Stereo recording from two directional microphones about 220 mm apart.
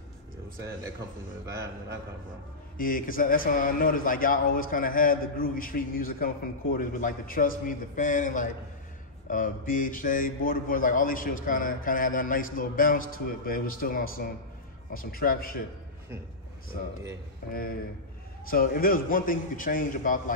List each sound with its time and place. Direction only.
1.4 s a man's voice: 15° right (ahead or behind)
2.8 s a man's voice: 40° left (ahead or behind)
17.5 s a man's voice: 40° left (ahead or behind)